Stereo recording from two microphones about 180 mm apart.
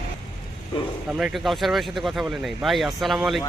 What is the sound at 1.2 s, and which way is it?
Speech, centre (ahead or behind).